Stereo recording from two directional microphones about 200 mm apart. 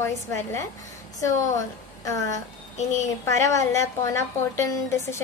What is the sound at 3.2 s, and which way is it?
A woman's voice, 15° left (ahead or behind).